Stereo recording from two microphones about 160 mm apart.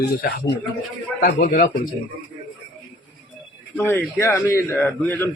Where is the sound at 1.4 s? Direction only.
55° left (ahead or behind).